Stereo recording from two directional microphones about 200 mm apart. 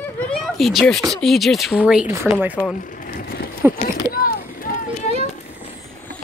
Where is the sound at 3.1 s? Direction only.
45° left (ahead or behind).